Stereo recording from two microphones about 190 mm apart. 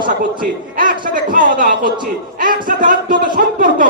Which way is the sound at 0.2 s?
45° right (ahead or behind).